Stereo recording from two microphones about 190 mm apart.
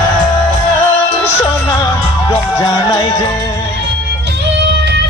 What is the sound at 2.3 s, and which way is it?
Music, 15° left (ahead or behind).